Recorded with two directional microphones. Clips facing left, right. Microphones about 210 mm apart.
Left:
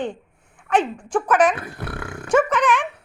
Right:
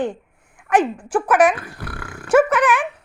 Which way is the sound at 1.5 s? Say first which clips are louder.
Left 2 dB; 25° left (ahead or behind).